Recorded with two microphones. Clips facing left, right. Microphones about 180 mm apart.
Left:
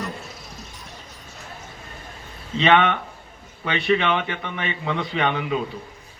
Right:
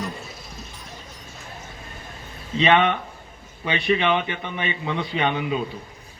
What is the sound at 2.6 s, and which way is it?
Speech, 10° right (ahead or behind).